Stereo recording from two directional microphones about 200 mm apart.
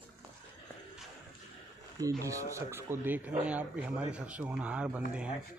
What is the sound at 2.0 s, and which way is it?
A man's voice, 15° right (ahead or behind).